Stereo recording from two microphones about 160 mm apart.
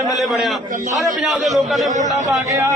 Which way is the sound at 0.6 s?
55° right (ahead or behind).